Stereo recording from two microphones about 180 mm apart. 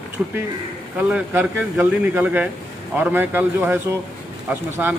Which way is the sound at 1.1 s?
10° right (ahead or behind).